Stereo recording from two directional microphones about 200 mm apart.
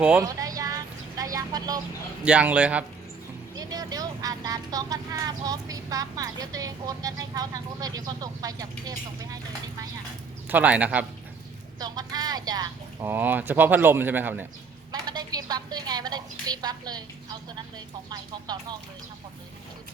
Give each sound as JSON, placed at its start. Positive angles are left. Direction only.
{"t": 0.0, "sound": "speech", "side_deg": -5}
{"t": 0.3, "sound": "a sound", "side_deg": -15}
{"t": 2.2, "sound": "speech", "side_deg": -5}
{"t": 3.5, "sound": "speech", "side_deg": -20}
{"t": 10.5, "sound": "speech", "side_deg": -5}
{"t": 11.8, "sound": "speech", "side_deg": -20}
{"t": 15.0, "sound": "a sound", "side_deg": -20}
{"t": 18.1, "sound": "speech", "side_deg": -20}